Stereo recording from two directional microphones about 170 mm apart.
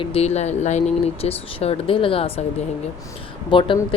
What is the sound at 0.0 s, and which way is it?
Speech, 35° left (ahead or behind).